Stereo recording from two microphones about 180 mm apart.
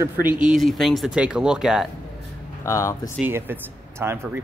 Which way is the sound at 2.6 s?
15° left (ahead or behind).